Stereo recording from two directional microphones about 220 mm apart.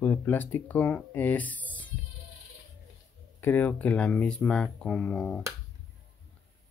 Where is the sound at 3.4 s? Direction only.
10° left (ahead or behind).